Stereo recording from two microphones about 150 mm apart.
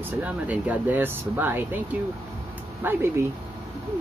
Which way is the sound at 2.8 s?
15° right (ahead or behind).